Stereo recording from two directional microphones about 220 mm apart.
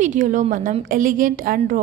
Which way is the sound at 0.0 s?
35° right (ahead or behind).